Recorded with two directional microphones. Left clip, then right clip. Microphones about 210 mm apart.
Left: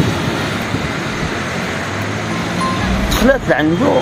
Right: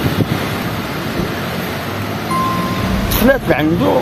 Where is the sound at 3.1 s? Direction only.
5° right (ahead or behind).